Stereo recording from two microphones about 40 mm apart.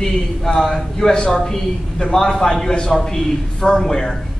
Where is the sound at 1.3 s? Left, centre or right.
Centre.